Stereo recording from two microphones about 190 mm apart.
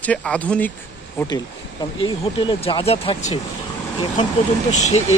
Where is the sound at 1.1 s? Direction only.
20° left (ahead or behind).